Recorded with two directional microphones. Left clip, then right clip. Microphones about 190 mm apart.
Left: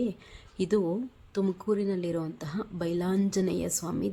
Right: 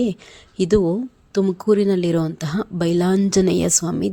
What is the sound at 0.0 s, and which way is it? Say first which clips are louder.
Speech: right 10 dB; 40° right (ahead or behind).